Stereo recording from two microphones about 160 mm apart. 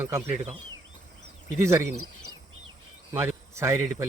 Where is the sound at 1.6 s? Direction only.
15° right (ahead or behind).